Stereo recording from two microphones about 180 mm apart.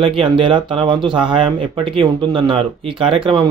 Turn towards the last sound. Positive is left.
turn(degrees=-30)  # may be behind; listen again after turning